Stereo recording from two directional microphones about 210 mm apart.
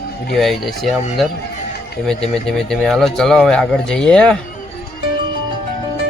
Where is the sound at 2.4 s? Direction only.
Centre (ahead or behind).